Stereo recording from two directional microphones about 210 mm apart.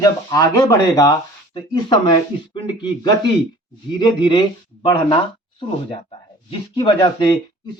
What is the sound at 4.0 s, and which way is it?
Speech, 20° left (ahead or behind).